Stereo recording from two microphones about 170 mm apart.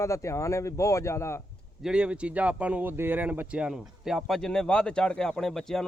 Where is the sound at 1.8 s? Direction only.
5° right (ahead or behind).